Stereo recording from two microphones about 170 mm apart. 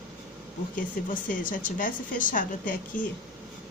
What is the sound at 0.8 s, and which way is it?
A woman's voice, 50° left (ahead or behind).